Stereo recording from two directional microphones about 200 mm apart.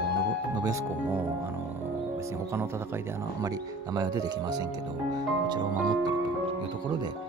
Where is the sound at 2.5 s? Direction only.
15° right (ahead or behind).